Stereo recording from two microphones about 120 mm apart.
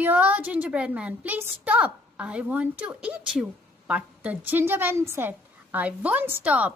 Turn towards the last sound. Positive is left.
turn(degrees=-15)  # may be behind; listen again after turning